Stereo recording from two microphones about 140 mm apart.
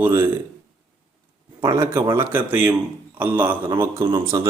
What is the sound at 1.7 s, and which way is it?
Speech, 20° right (ahead or behind).